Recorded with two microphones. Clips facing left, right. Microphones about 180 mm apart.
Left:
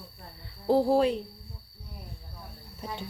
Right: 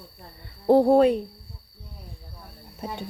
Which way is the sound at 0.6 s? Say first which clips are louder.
Right 6 dB; 65° right (ahead or behind).